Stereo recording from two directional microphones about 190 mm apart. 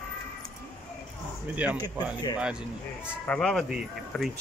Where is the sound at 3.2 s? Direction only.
5° left (ahead or behind).